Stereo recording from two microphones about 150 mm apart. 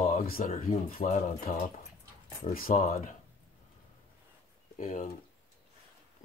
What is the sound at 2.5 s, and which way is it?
Speech, 70° left (ahead or behind).